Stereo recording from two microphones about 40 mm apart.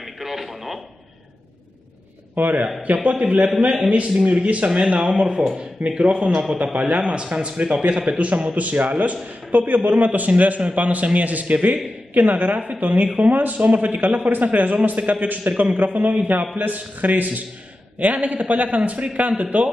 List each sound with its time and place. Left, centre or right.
0.0 s radio: centre
2.4 s a man's voice: right
2.8 s a man's voice: right